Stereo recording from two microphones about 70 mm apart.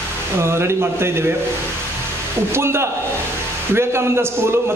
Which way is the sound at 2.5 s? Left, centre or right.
Right.